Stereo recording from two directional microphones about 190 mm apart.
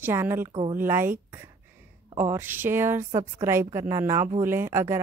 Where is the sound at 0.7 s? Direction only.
10° right (ahead or behind).